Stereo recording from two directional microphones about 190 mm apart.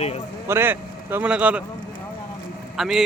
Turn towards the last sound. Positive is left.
turn(degrees=0)  # may be behind; listen again after turning